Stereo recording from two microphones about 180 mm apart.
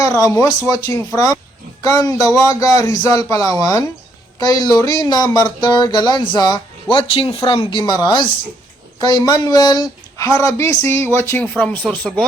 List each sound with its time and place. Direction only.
0.0 s speech: 20° left (ahead or behind)